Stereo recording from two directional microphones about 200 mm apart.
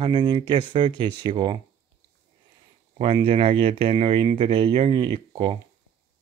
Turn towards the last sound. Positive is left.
turn(degrees=-25)  # may be behind; listen again after turning